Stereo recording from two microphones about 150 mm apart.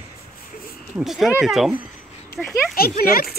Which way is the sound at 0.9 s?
Centre (ahead or behind).